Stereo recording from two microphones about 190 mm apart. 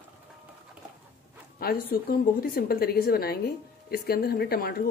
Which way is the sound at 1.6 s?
55° left (ahead or behind).